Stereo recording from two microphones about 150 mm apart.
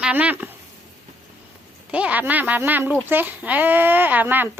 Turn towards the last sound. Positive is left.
turn(degrees=-15)  # may be behind; listen again after turning